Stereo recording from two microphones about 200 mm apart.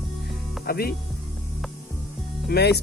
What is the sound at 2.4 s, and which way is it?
Speech, 55° left (ahead or behind).